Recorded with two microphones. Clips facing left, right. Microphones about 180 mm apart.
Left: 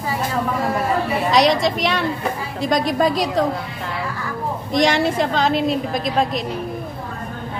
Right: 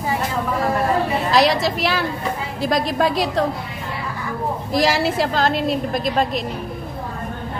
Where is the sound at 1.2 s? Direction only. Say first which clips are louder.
Left 2 dB; centre (ahead or behind).